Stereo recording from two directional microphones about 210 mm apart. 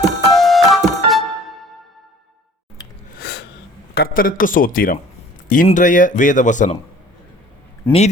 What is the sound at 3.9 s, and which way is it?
A man's voice, 45° left (ahead or behind).